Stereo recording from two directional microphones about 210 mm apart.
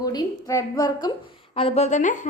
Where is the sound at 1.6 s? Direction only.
30° left (ahead or behind).